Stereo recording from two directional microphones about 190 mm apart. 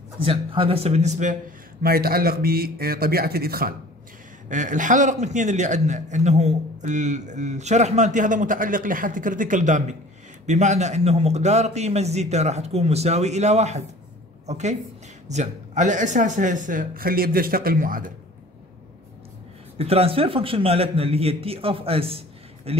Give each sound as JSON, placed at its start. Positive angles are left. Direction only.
{"t": 0.2, "sound": "a man's voice", "side_deg": -30}
{"t": 1.8, "sound": "speech", "side_deg": -50}
{"t": 4.5, "sound": "a man's voice", "side_deg": -40}
{"t": 19.8, "sound": "a man's voice", "side_deg": -30}